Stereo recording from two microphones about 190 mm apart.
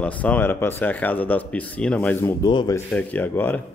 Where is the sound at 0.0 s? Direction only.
10° left (ahead or behind).